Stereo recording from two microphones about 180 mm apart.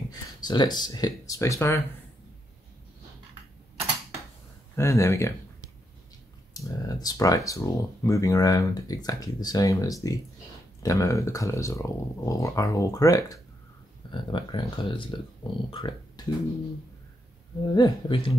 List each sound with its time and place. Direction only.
0.1 s speech: 25° left (ahead or behind)
4.7 s speech: 15° left (ahead or behind)
6.5 s speech: 20° left (ahead or behind)
17.7 s speech: 25° left (ahead or behind)